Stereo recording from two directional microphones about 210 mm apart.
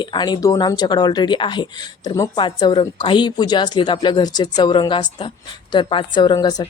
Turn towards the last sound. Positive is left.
turn(degrees=20)  # may be behind; listen again after turning